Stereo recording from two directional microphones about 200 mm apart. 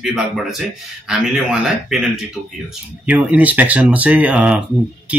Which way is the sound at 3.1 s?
5° right (ahead or behind).